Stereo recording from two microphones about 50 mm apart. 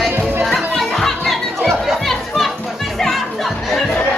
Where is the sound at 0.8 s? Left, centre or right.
Centre.